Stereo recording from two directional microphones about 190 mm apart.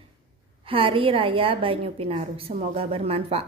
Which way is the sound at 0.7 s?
30° right (ahead or behind).